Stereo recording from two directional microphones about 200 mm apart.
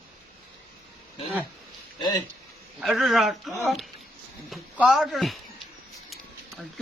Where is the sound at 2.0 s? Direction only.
20° left (ahead or behind).